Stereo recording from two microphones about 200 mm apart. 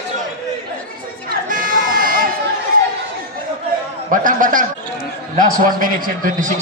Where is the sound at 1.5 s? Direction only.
45° right (ahead or behind).